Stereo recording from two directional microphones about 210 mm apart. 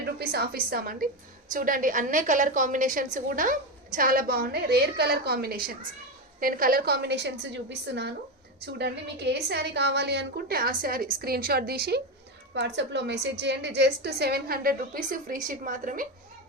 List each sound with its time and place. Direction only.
0.2 s a woman's voice: 45° right (ahead or behind)